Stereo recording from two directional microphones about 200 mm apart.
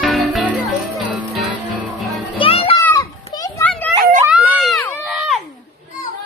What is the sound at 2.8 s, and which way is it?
Children playing, 20° left (ahead or behind).